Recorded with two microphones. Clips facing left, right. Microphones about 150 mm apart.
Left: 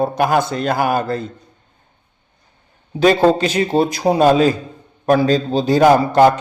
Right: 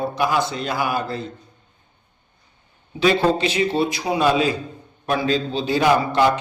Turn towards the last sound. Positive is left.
turn(degrees=45)  # may be behind; listen again after turning